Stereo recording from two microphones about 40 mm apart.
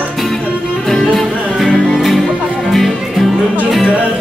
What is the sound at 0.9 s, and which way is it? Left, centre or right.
Music, centre.